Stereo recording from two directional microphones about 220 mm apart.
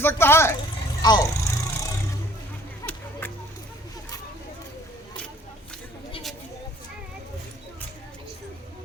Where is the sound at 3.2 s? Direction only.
10° left (ahead or behind).